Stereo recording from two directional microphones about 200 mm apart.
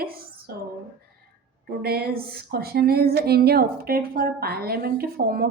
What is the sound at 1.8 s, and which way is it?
A woman's voice, 50° right (ahead or behind).